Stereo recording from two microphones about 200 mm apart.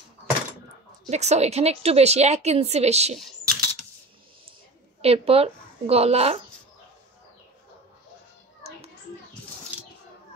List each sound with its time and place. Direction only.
1.1 s a woman's voice: 35° right (ahead or behind)
3.2 s typing: centre (ahead or behind)
5.0 s a woman's voice: 30° right (ahead or behind)